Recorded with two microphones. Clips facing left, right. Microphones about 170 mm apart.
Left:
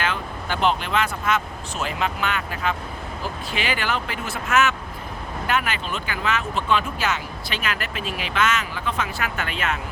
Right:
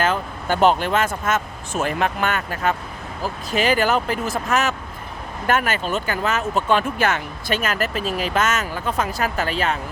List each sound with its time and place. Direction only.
0.0 s speech: 45° right (ahead or behind)